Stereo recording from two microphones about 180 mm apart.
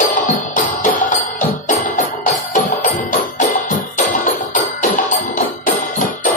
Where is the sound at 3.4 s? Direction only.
45° left (ahead or behind).